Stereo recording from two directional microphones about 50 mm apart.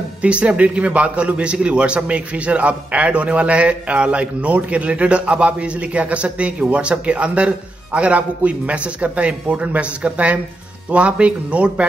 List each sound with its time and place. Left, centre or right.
0.2 s a man's voice: right